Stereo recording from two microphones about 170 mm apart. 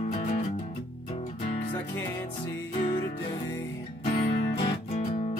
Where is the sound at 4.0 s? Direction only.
35° left (ahead or behind).